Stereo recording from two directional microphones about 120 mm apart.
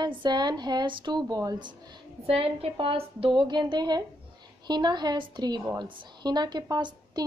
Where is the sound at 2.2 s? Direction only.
55° right (ahead or behind).